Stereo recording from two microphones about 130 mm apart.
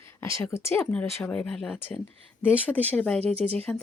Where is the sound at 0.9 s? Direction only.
10° left (ahead or behind).